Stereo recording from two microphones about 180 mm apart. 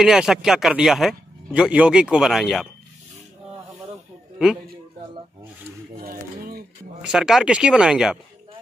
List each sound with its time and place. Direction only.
0.0 s speech: 5° right (ahead or behind)
6.0 s a sound: 55° right (ahead or behind)
7.0 s speech: 5° right (ahead or behind)